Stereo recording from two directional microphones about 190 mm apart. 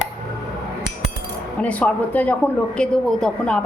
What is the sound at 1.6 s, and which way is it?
A woman's voice, 5° left (ahead or behind).